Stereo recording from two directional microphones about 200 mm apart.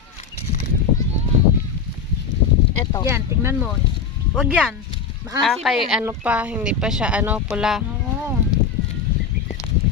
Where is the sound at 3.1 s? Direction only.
10° right (ahead or behind).